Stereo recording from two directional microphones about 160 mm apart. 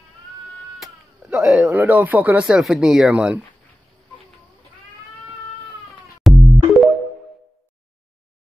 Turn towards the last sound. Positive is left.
turn(degrees=0)  # may be behind; listen again after turning